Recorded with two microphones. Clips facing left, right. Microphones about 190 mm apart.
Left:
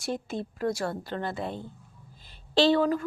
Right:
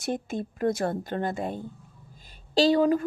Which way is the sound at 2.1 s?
45° right (ahead or behind).